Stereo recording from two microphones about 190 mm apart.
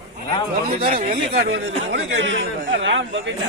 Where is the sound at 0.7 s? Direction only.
45° right (ahead or behind).